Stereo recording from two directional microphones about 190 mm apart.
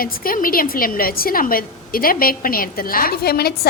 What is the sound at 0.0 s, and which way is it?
A woman's voice, 50° left (ahead or behind).